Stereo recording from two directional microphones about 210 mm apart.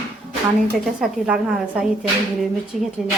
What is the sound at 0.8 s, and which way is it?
A woman's voice, 5° right (ahead or behind).